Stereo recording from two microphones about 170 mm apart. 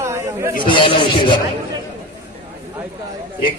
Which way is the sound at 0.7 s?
30° left (ahead or behind).